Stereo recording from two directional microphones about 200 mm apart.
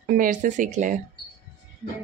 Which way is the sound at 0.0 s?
45° right (ahead or behind).